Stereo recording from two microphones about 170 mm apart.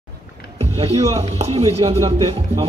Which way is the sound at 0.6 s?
35° right (ahead or behind).